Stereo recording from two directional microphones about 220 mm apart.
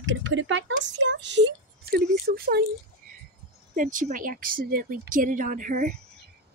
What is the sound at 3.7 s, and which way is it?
Speech, 35° right (ahead or behind).